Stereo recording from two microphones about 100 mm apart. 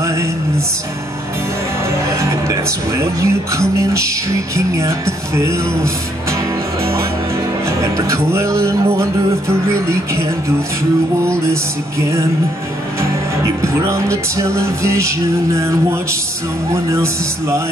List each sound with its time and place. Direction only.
0.0 s music: 30° right (ahead or behind)
2.1 s speech: 30° right (ahead or behind)
4.6 s music: 30° right (ahead or behind)
6.8 s speech: 30° right (ahead or behind)
7.8 s music: 30° right (ahead or behind)
13.4 s music: 30° right (ahead or behind)